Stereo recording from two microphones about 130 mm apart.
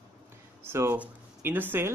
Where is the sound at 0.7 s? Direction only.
15° right (ahead or behind).